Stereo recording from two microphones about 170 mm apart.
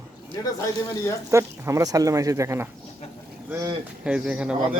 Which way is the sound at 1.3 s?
15° right (ahead or behind).